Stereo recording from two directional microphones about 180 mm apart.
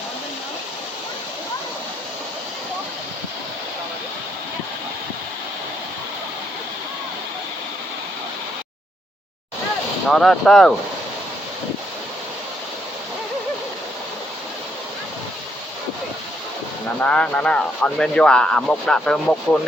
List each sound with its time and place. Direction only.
10.1 s speech: 5° left (ahead or behind)
17.0 s speech: 5° left (ahead or behind)